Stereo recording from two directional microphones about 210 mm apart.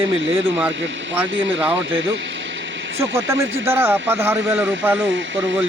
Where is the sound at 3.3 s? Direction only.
65° right (ahead or behind).